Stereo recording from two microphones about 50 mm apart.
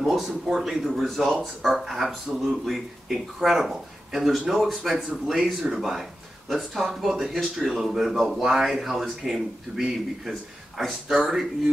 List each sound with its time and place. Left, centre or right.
0.0 s speech: centre